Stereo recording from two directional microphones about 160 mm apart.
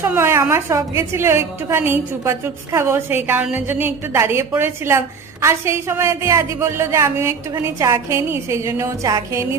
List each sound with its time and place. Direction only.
0.0 s a woman's voice: 15° right (ahead or behind)